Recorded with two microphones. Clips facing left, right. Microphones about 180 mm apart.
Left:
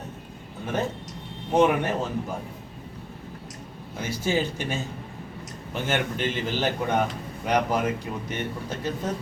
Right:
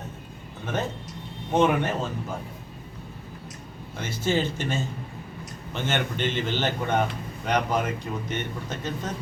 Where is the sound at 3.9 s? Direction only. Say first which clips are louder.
Even; 10° left (ahead or behind).